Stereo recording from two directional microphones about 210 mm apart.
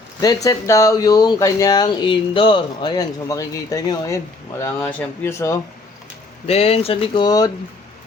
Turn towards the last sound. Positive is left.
turn(degrees=20)  # may be behind; listen again after turning